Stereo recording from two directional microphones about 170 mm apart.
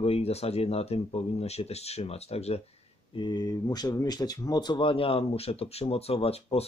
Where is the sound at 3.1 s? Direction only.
25° left (ahead or behind).